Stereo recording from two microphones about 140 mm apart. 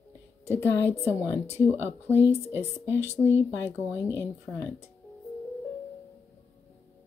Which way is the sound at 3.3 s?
15° right (ahead or behind).